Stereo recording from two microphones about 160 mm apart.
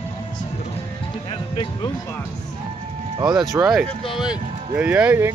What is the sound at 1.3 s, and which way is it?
Music, 30° left (ahead or behind).